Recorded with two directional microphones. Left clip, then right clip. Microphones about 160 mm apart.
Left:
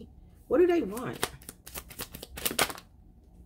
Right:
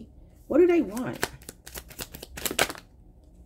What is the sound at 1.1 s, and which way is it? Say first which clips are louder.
Shuffling cards: right 3 dB; 20° right (ahead or behind).